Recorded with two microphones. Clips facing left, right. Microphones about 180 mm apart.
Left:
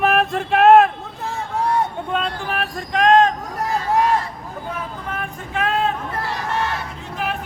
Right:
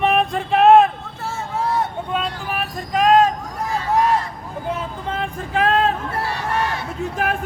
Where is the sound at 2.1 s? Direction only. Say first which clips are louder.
Left 1 dB; 5° right (ahead or behind).